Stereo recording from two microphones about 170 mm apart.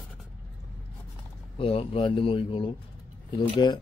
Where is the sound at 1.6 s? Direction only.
35° left (ahead or behind).